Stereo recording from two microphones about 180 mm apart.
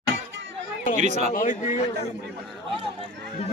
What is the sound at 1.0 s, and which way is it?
Speech, 40° right (ahead or behind).